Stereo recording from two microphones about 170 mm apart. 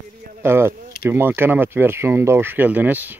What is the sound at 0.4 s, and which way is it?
Speech, 15° right (ahead or behind).